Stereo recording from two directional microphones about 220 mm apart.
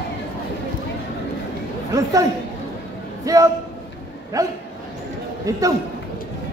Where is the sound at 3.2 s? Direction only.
15° right (ahead or behind).